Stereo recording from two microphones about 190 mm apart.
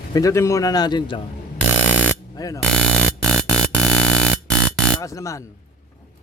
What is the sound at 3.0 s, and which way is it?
Music, 5° left (ahead or behind).